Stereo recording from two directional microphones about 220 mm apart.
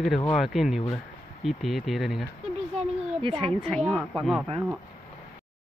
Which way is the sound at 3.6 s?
5° left (ahead or behind).